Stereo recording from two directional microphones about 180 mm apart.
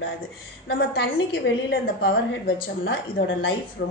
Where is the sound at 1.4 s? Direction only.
85° left.